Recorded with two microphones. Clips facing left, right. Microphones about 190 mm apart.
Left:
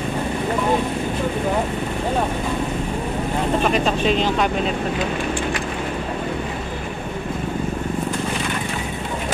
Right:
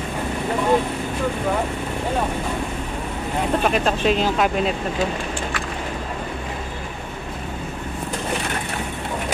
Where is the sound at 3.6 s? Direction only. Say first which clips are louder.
Even; centre (ahead or behind).